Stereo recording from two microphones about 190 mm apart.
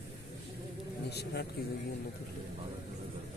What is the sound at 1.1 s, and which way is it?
Speech, 60° left (ahead or behind).